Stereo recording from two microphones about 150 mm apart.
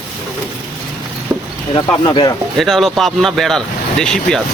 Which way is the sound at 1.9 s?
30° left (ahead or behind).